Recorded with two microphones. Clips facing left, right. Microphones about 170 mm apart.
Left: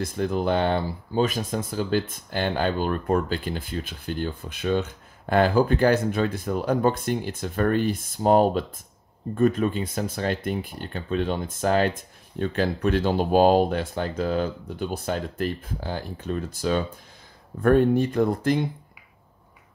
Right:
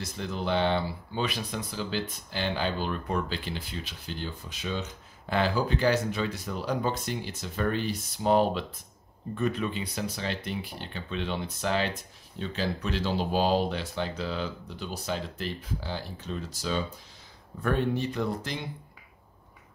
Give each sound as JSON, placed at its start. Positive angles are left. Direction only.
{"t": 0.0, "sound": "speech", "side_deg": 50}